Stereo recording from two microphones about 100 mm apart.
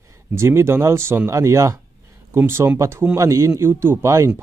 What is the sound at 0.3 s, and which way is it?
Speech, 25° right (ahead or behind).